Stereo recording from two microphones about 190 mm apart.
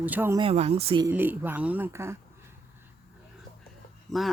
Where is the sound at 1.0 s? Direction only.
10° right (ahead or behind).